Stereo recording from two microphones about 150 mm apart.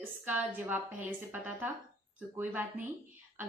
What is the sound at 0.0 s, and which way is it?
A woman's voice, 15° right (ahead or behind).